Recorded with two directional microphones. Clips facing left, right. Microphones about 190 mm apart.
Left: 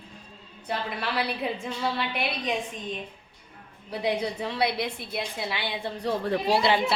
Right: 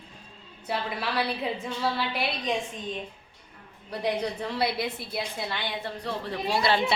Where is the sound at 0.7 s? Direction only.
Centre (ahead or behind).